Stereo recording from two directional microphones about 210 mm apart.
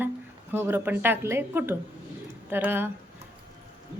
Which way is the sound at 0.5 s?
10° right (ahead or behind).